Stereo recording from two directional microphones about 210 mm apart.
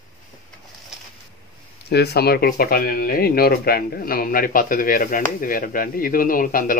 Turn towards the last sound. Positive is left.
turn(degrees=40)  # may be behind; listen again after turning